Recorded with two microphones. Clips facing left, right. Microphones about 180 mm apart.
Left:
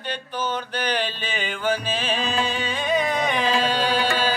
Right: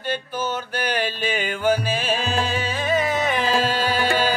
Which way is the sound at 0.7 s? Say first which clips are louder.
Right 1 dB; 10° right (ahead or behind).